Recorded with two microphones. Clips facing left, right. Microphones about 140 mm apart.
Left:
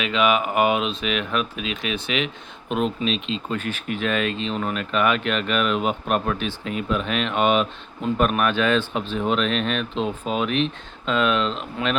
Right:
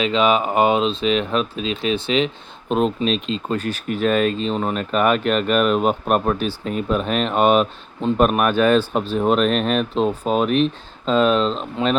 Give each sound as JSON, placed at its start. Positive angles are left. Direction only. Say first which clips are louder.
{"t": 0.0, "sound": "speech", "louder": "right 3 dB", "side_deg": -30}